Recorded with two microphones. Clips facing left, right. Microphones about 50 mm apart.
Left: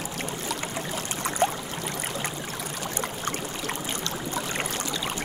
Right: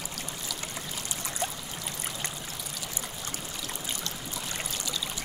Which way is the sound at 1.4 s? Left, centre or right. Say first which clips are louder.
Left 10 dB; left.